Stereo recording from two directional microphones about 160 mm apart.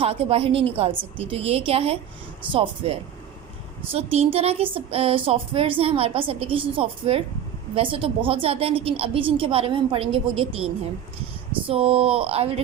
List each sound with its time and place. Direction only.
0.0 s speech: 35° right (ahead or behind)